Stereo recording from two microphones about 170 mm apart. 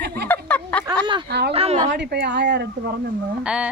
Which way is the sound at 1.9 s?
75° right (ahead or behind).